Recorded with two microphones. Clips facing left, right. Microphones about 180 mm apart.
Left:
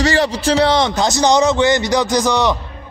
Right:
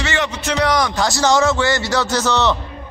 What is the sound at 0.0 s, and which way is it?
A man's voice, 35° left (ahead or behind).